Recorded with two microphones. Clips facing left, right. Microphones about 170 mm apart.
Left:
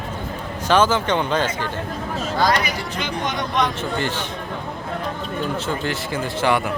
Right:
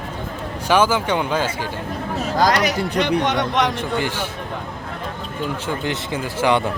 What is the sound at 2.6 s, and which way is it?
Speech, 70° right (ahead or behind).